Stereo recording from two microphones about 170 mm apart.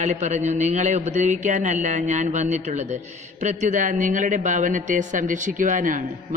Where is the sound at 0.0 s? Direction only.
45° right (ahead or behind).